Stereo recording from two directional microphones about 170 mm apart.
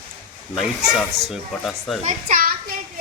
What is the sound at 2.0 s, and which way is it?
Children playing, 50° right (ahead or behind).